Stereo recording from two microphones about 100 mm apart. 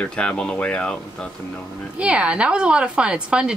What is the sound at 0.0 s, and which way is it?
Speech, 10° left (ahead or behind).